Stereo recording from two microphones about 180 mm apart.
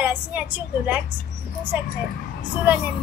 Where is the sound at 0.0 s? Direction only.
10° right (ahead or behind).